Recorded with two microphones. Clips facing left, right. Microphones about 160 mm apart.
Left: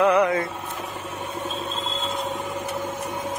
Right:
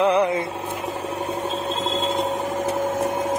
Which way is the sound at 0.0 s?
30° right (ahead or behind).